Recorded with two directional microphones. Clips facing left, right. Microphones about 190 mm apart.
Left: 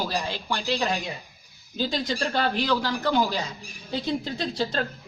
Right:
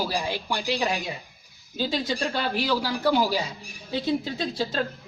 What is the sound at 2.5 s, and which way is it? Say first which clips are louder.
Speech: even; 10° right (ahead or behind).